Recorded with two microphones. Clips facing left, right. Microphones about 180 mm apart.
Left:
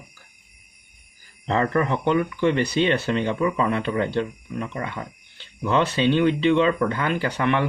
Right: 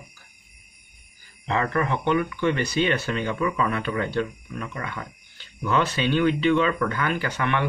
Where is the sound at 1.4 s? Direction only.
35° left (ahead or behind).